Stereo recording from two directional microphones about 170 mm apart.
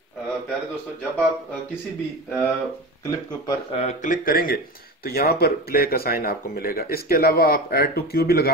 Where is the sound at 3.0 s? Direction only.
20° left (ahead or behind).